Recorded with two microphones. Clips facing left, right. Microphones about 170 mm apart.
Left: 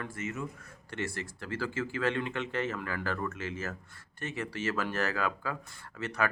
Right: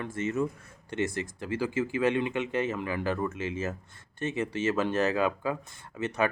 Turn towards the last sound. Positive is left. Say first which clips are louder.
# right 4 dB
turn(degrees=-20)  # may be behind; listen again after turning